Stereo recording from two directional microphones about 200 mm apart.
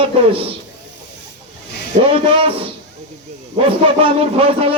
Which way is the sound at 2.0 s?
25° right (ahead or behind).